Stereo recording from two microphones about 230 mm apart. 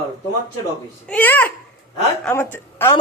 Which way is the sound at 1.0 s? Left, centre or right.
Centre.